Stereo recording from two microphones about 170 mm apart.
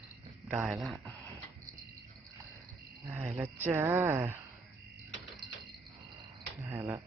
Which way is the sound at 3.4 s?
10° right (ahead or behind).